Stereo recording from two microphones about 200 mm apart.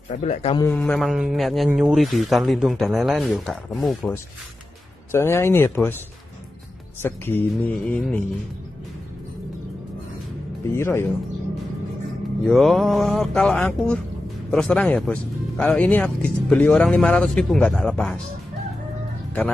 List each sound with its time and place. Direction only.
0.2 s a man's voice: 35° left (ahead or behind)
0.6 s speech: 10° left (ahead or behind)
5.1 s speech: 10° left (ahead or behind)
7.0 s speech: 10° left (ahead or behind)
10.7 s speech: 15° left (ahead or behind)
12.4 s speech: centre (ahead or behind)